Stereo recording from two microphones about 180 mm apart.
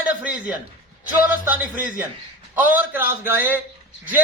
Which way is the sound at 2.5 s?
10° right (ahead or behind).